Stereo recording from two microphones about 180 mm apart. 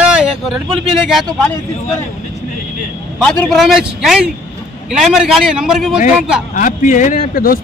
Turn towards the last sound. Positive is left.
turn(degrees=55)  # may be behind; listen again after turning